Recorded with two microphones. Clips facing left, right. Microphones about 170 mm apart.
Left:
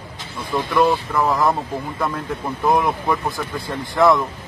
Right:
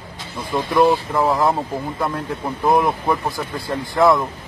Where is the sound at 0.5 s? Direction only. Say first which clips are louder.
Right 2 dB; 25° right (ahead or behind).